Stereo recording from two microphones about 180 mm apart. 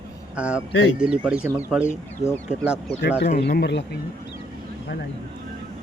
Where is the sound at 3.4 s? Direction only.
65° left (ahead or behind).